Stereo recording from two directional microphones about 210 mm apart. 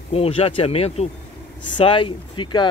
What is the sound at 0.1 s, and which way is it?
Speech, 30° left (ahead or behind).